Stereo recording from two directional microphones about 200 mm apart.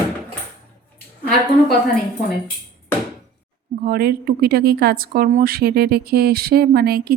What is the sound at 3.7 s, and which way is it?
Speech, 50° right (ahead or behind).